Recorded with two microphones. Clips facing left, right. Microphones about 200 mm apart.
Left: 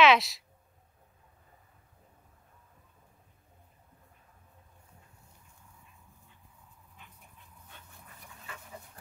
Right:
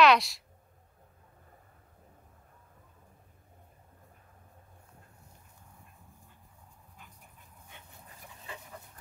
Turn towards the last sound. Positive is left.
turn(degrees=-15)  # may be behind; listen again after turning